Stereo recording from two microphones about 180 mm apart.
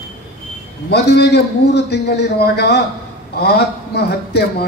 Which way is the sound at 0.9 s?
65° left (ahead or behind).